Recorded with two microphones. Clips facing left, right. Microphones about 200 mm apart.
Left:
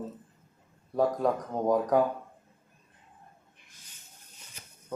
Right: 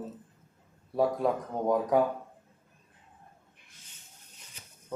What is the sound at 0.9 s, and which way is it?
Speech, centre (ahead or behind).